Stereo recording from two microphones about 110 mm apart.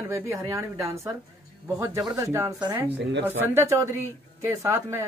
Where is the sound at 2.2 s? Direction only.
30° right (ahead or behind).